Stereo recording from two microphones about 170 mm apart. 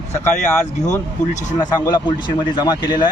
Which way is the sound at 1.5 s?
25° left (ahead or behind).